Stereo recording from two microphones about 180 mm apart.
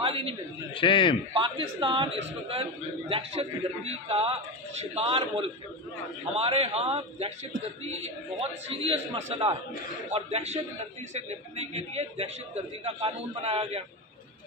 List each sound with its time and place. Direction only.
0.0 s a sound: 30° right (ahead or behind)
0.7 s a man's voice: 30° left (ahead or behind)
1.3 s a man's voice: 30° right (ahead or behind)